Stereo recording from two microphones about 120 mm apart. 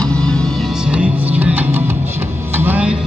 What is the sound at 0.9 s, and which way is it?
Music, 10° right (ahead or behind).